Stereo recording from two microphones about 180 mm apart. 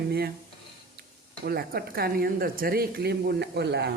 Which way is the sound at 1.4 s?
55° right (ahead or behind).